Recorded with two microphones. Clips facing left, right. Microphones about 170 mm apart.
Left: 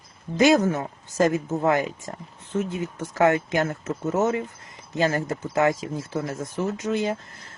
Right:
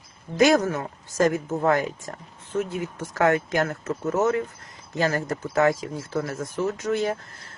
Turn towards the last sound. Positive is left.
turn(degrees=20)  # may be behind; listen again after turning